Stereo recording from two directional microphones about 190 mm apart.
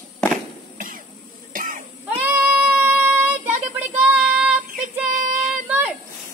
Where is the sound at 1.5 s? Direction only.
45° right (ahead or behind).